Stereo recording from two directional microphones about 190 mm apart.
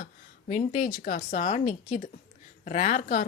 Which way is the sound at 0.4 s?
40° left (ahead or behind).